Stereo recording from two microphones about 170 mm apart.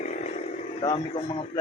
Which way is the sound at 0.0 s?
40° left (ahead or behind).